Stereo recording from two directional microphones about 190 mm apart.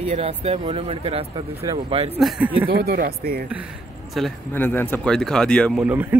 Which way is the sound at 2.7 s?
55° right (ahead or behind).